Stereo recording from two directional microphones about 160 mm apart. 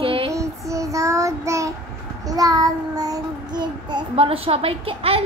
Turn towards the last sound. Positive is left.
turn(degrees=-35)  # may be behind; listen again after turning